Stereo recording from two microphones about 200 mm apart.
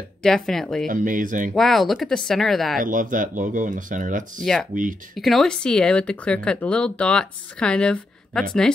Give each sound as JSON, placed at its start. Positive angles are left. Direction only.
{"t": 0.2, "sound": "speech", "side_deg": 0}
{"t": 0.8, "sound": "speech", "side_deg": -40}
{"t": 1.5, "sound": "speech", "side_deg": 0}
{"t": 2.8, "sound": "speech", "side_deg": -40}
{"t": 5.1, "sound": "speech", "side_deg": 0}